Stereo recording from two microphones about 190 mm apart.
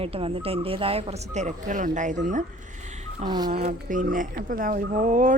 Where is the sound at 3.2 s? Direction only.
20° right (ahead or behind).